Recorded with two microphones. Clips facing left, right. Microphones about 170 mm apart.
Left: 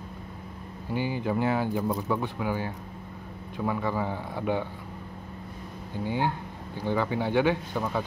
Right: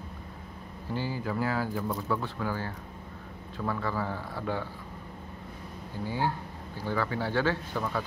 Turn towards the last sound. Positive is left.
turn(degrees=20)  # may be behind; listen again after turning